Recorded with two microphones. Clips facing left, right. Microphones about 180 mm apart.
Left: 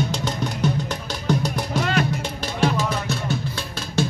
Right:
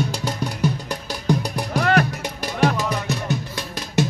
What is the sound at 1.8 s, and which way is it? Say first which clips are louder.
Music: right 5 dB; 60° right (ahead or behind).